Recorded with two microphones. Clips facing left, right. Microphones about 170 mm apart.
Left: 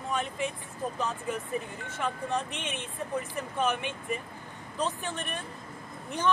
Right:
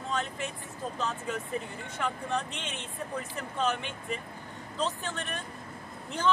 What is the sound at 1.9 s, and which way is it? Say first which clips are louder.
Speech: left 1 dB; 20° left (ahead or behind).